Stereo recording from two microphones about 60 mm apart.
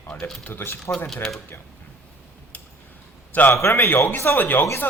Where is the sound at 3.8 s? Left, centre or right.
Left.